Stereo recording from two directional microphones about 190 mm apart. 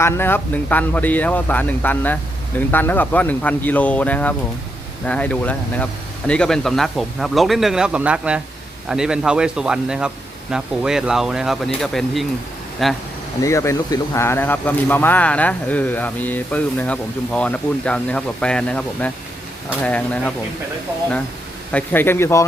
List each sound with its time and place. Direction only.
0.0 s a man's voice: 10° left (ahead or behind)
13.4 s a man's voice: 15° left (ahead or behind)
21.7 s a man's voice: 10° left (ahead or behind)